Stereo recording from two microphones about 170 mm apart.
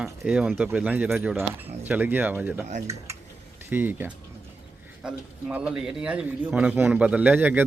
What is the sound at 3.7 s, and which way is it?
Speech, 10° right (ahead or behind).